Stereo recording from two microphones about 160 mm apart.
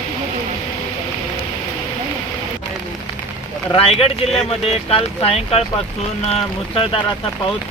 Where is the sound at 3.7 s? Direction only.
35° left (ahead or behind).